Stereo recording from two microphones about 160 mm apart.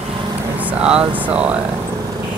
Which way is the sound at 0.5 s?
10° right (ahead or behind).